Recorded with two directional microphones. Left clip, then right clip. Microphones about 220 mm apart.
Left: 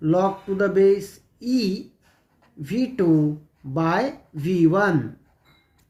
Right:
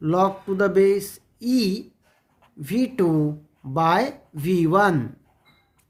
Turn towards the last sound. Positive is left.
turn(degrees=-45)  # may be behind; listen again after turning